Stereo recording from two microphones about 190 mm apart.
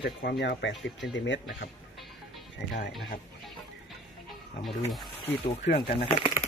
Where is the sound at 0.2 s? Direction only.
60° left (ahead or behind).